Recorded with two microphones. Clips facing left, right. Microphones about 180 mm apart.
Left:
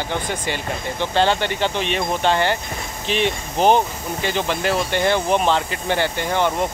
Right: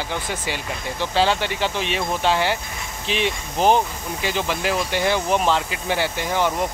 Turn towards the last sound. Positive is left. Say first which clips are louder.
# left 2 dB
turn(degrees=-5)  # may be behind; listen again after turning